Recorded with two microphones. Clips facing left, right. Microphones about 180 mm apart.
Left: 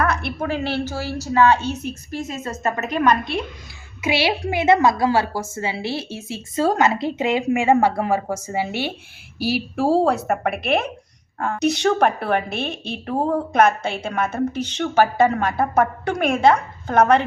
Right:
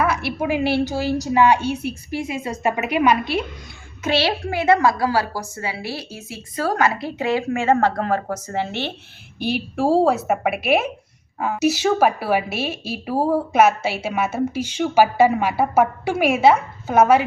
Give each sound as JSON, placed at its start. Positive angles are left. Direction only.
{"t": 0.0, "sound": "a woman's voice", "side_deg": -5}
{"t": 4.0, "sound": "a woman's voice", "side_deg": 10}